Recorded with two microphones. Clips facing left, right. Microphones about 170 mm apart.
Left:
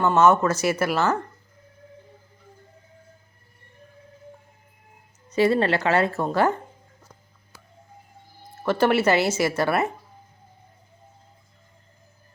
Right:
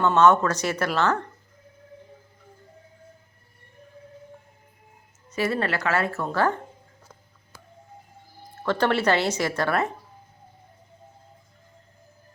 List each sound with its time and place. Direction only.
0.0 s speech: 5° left (ahead or behind)
5.3 s a woman's voice: 25° left (ahead or behind)
8.6 s speech: 10° left (ahead or behind)